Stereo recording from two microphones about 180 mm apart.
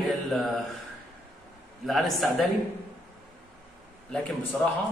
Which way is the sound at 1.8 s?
Centre (ahead or behind).